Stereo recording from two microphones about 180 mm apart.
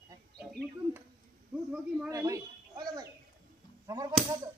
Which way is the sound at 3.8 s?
20° right (ahead or behind).